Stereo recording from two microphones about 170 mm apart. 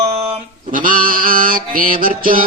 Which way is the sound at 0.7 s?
55° right (ahead or behind).